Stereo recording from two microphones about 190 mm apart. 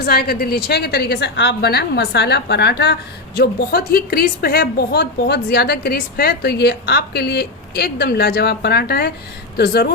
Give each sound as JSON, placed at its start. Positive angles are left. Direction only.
{"t": 0.0, "sound": "a woman's voice", "side_deg": 50}